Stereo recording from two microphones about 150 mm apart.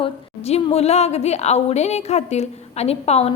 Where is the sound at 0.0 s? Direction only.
45° left (ahead or behind).